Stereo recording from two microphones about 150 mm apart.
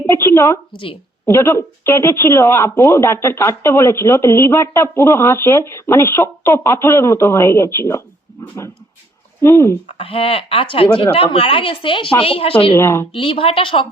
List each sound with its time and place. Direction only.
0.0 s a woman's voice: 15° left (ahead or behind)
9.9 s a woman's voice: 40° left (ahead or behind)
12.7 s speech: 15° left (ahead or behind)
13.1 s a woman's voice: 35° left (ahead or behind)